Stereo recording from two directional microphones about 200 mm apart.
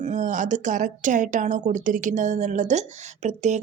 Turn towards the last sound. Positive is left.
turn(degrees=-35)  # may be behind; listen again after turning